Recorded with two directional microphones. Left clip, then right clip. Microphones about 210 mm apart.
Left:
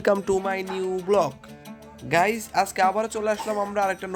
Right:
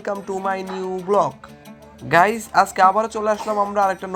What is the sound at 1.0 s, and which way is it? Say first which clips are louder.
Speech: right 4 dB; 20° left (ahead or behind).